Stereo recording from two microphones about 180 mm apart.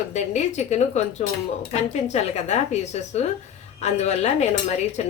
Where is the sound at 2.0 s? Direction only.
40° left (ahead or behind).